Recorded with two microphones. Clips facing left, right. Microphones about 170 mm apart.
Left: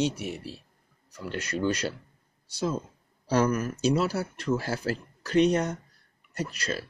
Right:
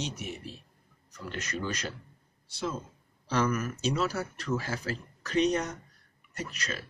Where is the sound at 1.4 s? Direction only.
30° left (ahead or behind).